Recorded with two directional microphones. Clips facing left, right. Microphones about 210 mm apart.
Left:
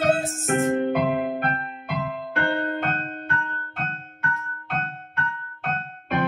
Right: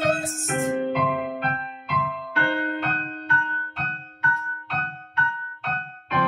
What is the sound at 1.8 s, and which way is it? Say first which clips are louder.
Music: left 1 dB; 50° left (ahead or behind).